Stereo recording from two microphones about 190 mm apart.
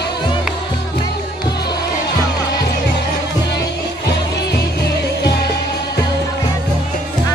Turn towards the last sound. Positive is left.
turn(degrees=60)  # may be behind; listen again after turning